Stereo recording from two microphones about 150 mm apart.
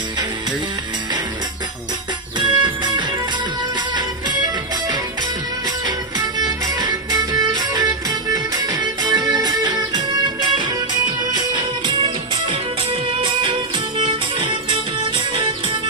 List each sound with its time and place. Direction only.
2.4 s music: 30° right (ahead or behind)
5.8 s music: 25° right (ahead or behind)